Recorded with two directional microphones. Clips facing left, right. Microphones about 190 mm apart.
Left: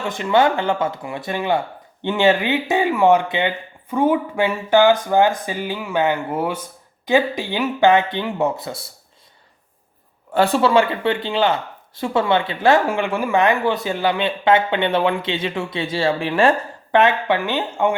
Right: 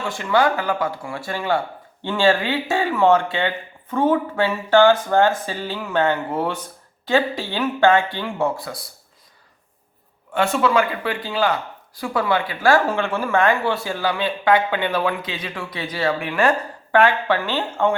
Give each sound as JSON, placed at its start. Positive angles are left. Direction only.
{"t": 0.0, "sound": "speech", "side_deg": 20}
{"t": 10.3, "sound": "speech", "side_deg": 35}